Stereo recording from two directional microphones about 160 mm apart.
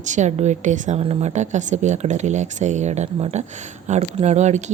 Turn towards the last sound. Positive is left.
turn(degrees=-45)  # may be behind; listen again after turning